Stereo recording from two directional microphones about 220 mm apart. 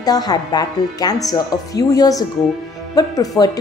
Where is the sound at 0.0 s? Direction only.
15° left (ahead or behind).